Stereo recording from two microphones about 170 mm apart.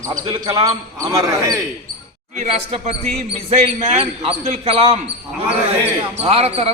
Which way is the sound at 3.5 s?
40° right (ahead or behind).